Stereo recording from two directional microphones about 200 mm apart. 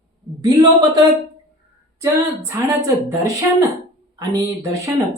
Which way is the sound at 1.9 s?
15° right (ahead or behind).